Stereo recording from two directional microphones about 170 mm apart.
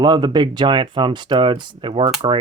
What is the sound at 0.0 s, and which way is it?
Speech, 25° right (ahead or behind).